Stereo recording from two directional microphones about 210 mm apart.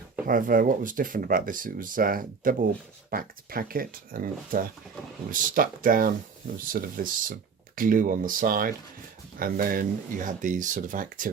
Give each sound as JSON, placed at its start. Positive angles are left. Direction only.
{"t": 0.3, "sound": "speech", "side_deg": -40}